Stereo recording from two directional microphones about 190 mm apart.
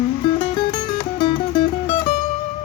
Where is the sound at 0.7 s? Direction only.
25° left (ahead or behind).